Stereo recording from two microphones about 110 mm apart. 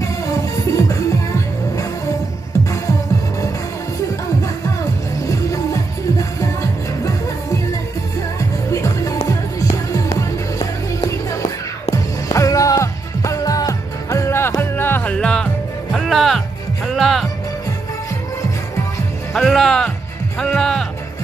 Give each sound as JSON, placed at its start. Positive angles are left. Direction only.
{"t": 0.0, "sound": "music", "side_deg": 30}
{"t": 5.2, "sound": "music", "side_deg": 30}
{"t": 8.4, "sound": "music", "side_deg": 30}
{"t": 19.3, "sound": "music", "side_deg": 0}